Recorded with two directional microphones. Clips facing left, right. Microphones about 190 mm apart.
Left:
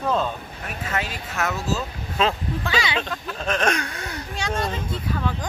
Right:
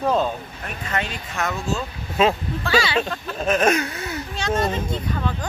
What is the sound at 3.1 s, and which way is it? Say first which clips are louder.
Speech: right 4 dB; 5° right (ahead or behind).